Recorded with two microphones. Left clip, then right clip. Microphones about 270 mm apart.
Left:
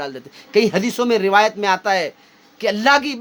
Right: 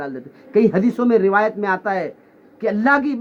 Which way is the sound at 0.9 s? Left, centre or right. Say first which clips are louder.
Right 1 dB; centre.